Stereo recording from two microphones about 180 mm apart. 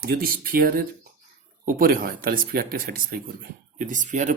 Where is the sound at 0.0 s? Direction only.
55° right (ahead or behind).